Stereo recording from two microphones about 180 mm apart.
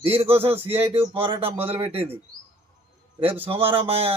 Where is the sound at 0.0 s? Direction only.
30° right (ahead or behind).